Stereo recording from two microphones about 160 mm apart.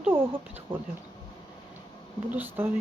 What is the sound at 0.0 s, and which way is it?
Speech, 15° right (ahead or behind).